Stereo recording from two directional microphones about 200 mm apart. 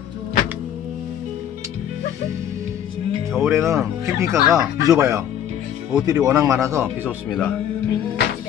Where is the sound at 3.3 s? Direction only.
15° right (ahead or behind).